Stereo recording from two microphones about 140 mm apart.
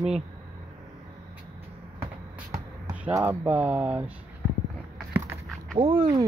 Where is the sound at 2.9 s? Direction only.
15° right (ahead or behind).